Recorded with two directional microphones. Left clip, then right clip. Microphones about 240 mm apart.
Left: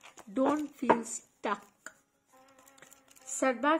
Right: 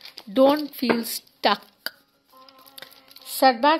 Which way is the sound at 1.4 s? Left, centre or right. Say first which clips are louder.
Right 13 dB; right.